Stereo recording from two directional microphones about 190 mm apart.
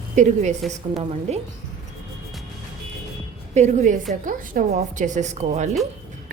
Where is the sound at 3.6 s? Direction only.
40° right (ahead or behind).